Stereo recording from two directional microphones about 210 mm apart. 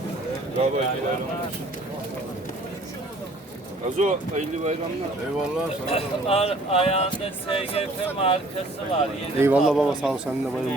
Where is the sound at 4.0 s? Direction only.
35° right (ahead or behind).